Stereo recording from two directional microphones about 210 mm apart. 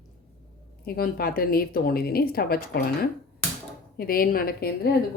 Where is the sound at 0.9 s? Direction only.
45° left (ahead or behind).